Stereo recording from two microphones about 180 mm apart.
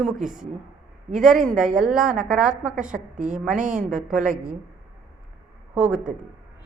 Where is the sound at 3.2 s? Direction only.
45° right (ahead or behind).